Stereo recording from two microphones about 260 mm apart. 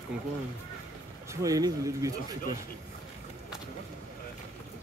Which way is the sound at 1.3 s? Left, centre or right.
Centre.